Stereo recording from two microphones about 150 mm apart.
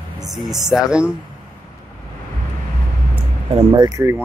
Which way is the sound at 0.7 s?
5° right (ahead or behind).